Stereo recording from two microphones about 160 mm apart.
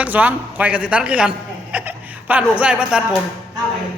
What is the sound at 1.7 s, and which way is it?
Chuckle, 10° right (ahead or behind).